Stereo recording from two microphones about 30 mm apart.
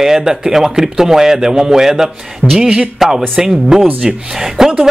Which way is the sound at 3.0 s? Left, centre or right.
Centre.